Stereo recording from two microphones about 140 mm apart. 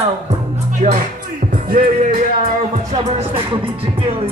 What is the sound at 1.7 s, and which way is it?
Music, 85° right.